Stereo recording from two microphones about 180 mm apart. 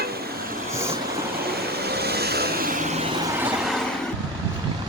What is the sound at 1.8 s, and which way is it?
Vehicle, 65° right (ahead or behind).